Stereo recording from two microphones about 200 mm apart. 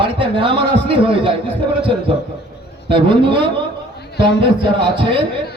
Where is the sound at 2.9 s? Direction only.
25° right (ahead or behind).